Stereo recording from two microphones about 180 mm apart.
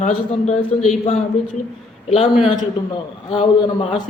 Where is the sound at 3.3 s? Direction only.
30° left (ahead or behind).